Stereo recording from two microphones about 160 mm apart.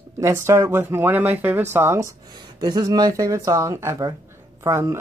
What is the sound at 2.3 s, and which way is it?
Speech, 25° right (ahead or behind).